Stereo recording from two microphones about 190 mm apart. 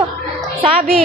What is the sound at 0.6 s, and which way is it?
Speech, 30° right (ahead or behind).